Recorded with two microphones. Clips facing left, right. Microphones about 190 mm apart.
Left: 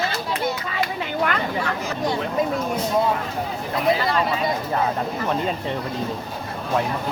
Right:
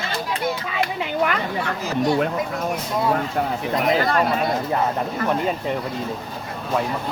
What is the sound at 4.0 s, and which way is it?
Speech, 50° right (ahead or behind).